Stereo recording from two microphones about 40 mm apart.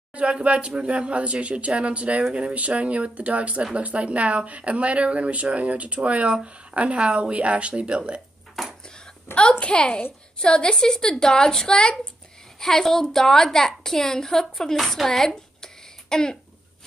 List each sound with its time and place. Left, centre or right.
0.1 s speech: right
8.6 s a sound: centre
9.3 s a woman's voice: left
12.5 s a woman's voice: centre
14.8 s a woman's voice: centre
15.0 s a sound: centre